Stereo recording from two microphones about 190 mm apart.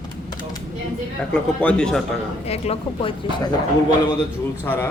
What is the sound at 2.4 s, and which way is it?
Speech, 30° left (ahead or behind).